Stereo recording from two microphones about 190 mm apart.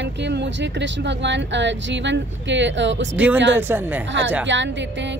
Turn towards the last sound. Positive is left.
turn(degrees=-70)  # may be behind; listen again after turning